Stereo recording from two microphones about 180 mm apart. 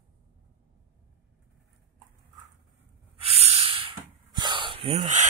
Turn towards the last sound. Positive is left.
turn(degrees=-45)  # may be behind; listen again after turning